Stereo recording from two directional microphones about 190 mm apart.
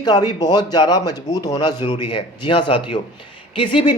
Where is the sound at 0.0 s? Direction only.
20° left (ahead or behind).